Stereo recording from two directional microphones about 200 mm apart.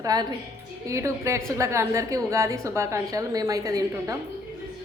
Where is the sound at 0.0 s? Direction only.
20° right (ahead or behind).